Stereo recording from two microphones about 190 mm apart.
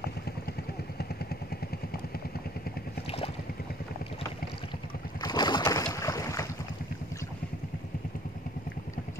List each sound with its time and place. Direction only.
5.2 s boat: 20° left (ahead or behind)